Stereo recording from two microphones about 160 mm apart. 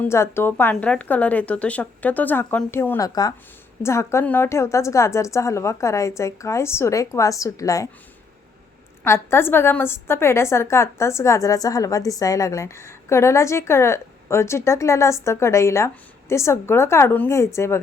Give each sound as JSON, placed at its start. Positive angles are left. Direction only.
{"t": 0.0, "sound": "a woman's voice", "side_deg": 15}
{"t": 9.0, "sound": "a woman's voice", "side_deg": 15}